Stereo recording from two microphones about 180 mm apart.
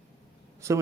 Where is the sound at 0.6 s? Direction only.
15° right (ahead or behind).